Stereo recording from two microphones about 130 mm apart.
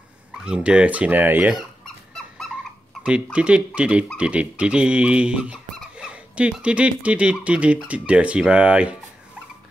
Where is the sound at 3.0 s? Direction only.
10° right (ahead or behind).